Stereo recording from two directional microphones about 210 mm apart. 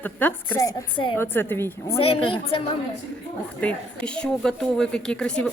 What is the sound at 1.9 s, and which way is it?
Speech, 25° left (ahead or behind).